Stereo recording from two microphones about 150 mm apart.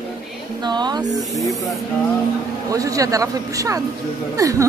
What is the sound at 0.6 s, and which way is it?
Speech, 30° right (ahead or behind).